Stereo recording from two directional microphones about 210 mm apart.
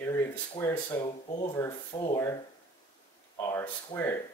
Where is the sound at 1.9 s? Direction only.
20° left (ahead or behind).